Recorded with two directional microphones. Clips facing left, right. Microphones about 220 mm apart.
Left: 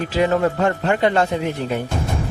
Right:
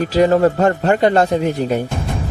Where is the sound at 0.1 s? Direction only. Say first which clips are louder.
Right 5 dB; 40° right (ahead or behind).